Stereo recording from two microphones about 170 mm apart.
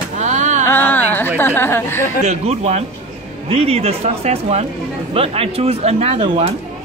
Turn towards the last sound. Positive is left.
turn(degrees=-35)  # may be behind; listen again after turning